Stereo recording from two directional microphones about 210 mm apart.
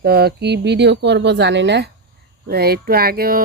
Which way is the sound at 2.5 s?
45° right (ahead or behind).